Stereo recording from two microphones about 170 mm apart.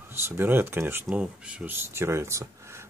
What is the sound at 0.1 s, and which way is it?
Speech, 15° right (ahead or behind).